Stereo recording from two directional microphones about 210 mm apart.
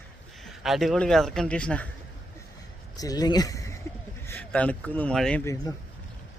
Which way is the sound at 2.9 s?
15° left (ahead or behind).